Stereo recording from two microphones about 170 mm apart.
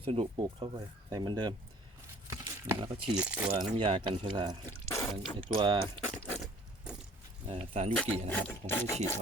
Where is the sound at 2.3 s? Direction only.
25° right (ahead or behind).